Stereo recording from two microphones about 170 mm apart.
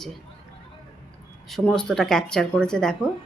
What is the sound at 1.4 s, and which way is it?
Speech, centre (ahead or behind).